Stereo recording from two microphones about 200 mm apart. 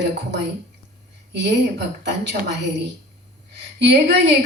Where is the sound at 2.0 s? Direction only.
60° right (ahead or behind).